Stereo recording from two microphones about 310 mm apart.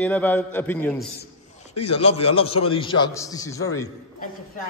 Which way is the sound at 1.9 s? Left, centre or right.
Centre.